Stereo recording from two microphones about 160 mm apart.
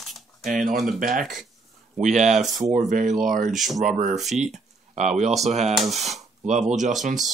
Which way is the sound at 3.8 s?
50° right (ahead or behind).